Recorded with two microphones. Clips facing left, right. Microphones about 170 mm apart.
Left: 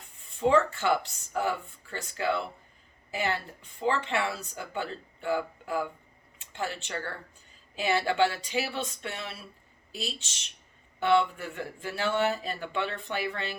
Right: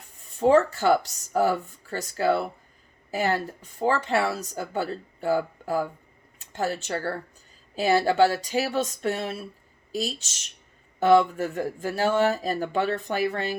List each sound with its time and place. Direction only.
0.3 s speech: 40° right (ahead or behind)